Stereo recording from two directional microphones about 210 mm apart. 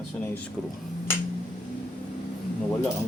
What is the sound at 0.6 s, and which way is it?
Speech, centre (ahead or behind).